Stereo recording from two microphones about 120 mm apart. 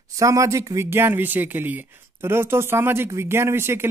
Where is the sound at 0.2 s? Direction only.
25° right (ahead or behind).